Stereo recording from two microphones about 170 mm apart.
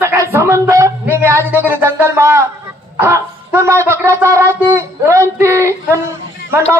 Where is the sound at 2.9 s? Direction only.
15° right (ahead or behind).